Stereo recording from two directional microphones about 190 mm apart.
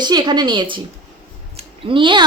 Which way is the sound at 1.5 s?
30° right (ahead or behind).